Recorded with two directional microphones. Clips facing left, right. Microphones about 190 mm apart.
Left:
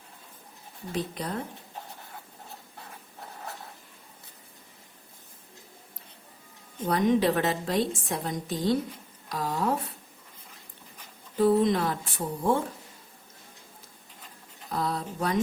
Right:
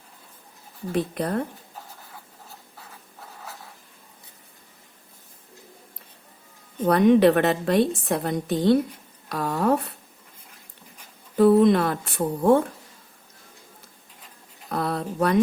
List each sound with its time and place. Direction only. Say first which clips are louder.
0.9 s a woman's voice: right 7 dB; 55° right (ahead or behind)
6.8 s a woman's voice: right 7 dB; 65° right (ahead or behind)
11.3 s a woman's voice: right 6 dB; 60° right (ahead or behind)
14.7 s a woman's voice: right 4 dB; 60° right (ahead or behind)